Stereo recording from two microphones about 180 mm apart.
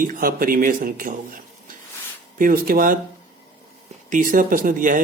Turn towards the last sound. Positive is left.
turn(degrees=-50)  # may be behind; listen again after turning